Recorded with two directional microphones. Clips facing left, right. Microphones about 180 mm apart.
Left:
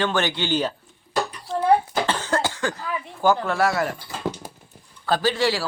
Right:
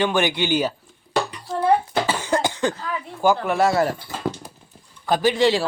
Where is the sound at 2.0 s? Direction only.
10° right (ahead or behind).